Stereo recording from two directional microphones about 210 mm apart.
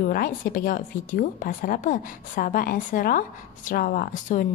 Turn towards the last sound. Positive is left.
turn(degrees=40)  # may be behind; listen again after turning